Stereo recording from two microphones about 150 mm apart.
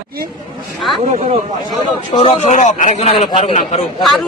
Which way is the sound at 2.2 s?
45° left (ahead or behind).